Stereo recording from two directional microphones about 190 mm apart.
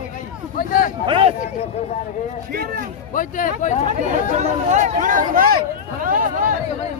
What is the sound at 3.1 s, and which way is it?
Speech, 45° left (ahead or behind).